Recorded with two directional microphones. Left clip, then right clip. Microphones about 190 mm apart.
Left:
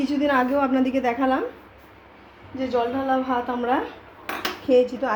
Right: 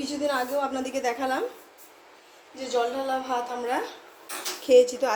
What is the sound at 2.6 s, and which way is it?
A woman's voice, 5° left (ahead or behind).